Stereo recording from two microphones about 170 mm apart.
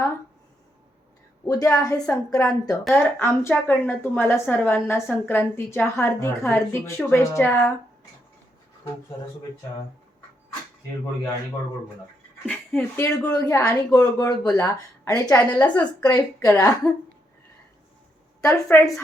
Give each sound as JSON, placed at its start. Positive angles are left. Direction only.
{"t": 1.5, "sound": "a woman's voice", "side_deg": 20}
{"t": 12.5, "sound": "speech", "side_deg": 5}
{"t": 13.4, "sound": "a woman's voice", "side_deg": 20}
{"t": 18.4, "sound": "a woman's voice", "side_deg": 15}